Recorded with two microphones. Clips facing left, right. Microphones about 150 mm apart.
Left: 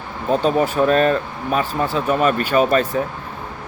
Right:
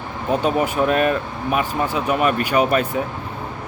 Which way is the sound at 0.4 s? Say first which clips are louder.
Left 2 dB; 15° right (ahead or behind).